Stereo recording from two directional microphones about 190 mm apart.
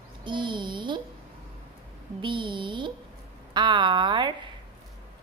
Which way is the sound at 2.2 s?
25° right (ahead or behind).